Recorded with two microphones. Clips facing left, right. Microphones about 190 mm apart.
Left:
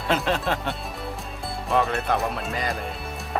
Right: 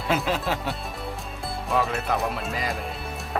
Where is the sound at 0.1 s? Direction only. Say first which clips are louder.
Left 1 dB; 5° right (ahead or behind).